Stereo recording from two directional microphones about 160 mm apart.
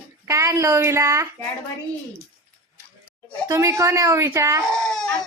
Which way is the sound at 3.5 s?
20° right (ahead or behind).